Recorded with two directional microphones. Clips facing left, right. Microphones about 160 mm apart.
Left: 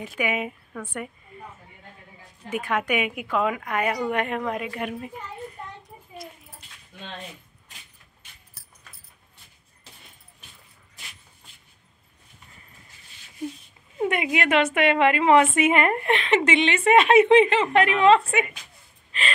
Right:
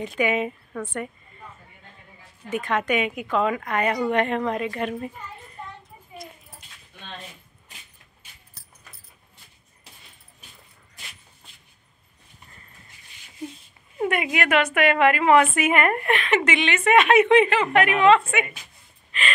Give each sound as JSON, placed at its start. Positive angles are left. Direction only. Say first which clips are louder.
{"t": 0.0, "sound": "a woman's voice", "louder": "right 4 dB", "side_deg": 5}
{"t": 2.5, "sound": "a woman's voice", "louder": "right 1 dB", "side_deg": 10}
{"t": 14.0, "sound": "a woman's voice", "louder": "even", "side_deg": 20}